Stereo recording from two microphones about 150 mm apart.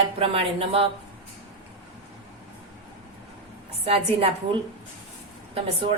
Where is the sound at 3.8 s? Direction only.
40° right (ahead or behind).